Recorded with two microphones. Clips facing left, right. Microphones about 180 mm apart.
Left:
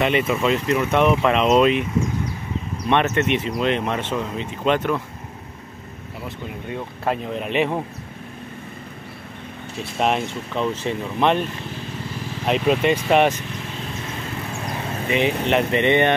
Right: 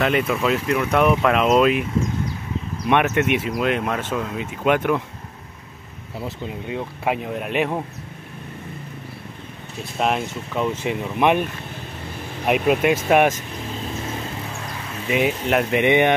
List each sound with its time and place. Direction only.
0.0 s speech: centre (ahead or behind)
2.9 s speech: 10° right (ahead or behind)
6.2 s speech: 15° right (ahead or behind)
7.3 s speech: 5° right (ahead or behind)
9.9 s speech: centre (ahead or behind)
12.4 s speech: 10° right (ahead or behind)
15.0 s speech: 5° right (ahead or behind)